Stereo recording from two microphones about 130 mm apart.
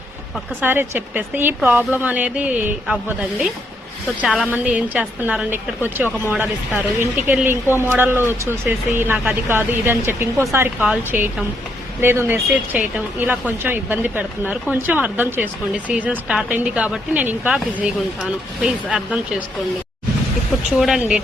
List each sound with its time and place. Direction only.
0.6 s speech: 15° right (ahead or behind)
20.7 s speech: 5° right (ahead or behind)